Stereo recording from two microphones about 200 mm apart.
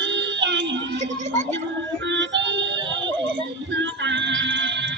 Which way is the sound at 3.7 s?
65° right (ahead or behind).